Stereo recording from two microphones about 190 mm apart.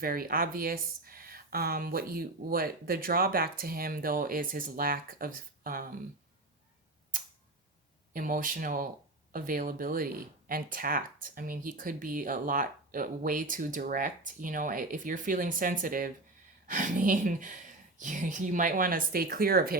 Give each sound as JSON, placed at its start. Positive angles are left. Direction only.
{"t": 0.0, "sound": "speech", "side_deg": -50}
{"t": 8.1, "sound": "speech", "side_deg": -45}